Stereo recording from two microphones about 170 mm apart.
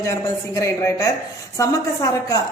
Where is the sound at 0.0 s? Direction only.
20° left (ahead or behind).